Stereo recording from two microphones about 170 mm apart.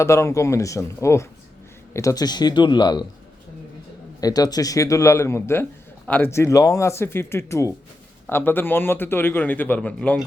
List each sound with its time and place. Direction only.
0.0 s a man's voice: 15° left (ahead or behind)
4.2 s a man's voice: 20° left (ahead or behind)